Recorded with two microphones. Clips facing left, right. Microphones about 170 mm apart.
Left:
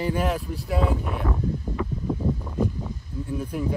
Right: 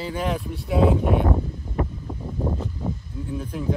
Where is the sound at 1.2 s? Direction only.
30° right (ahead or behind).